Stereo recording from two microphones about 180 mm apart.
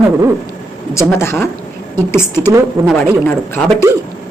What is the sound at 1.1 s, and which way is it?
A woman's voice, 15° left (ahead or behind).